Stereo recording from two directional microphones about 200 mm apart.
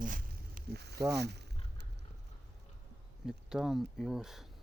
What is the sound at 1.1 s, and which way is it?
Speech, 55° right (ahead or behind).